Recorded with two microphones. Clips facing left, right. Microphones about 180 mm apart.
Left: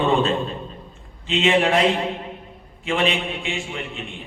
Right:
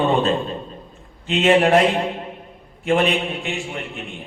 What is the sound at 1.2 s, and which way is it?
Speech, 45° right (ahead or behind).